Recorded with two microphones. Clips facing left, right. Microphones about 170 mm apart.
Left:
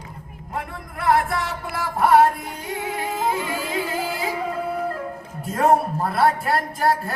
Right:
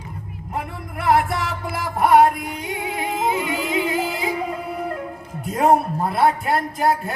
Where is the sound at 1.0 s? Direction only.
20° right (ahead or behind).